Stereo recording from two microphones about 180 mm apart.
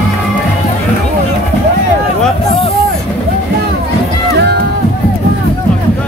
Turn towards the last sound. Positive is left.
turn(degrees=-70)  # may be behind; listen again after turning